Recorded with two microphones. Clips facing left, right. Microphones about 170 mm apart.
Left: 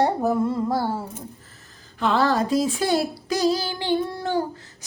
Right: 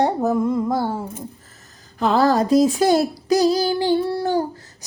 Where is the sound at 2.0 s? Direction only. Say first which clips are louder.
Right 4 dB; 40° right (ahead or behind).